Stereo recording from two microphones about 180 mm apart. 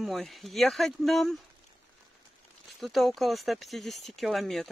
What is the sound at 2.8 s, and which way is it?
Speech, centre (ahead or behind).